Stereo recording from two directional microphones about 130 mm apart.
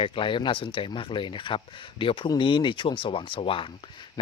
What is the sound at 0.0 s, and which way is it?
Speech, 40° left (ahead or behind).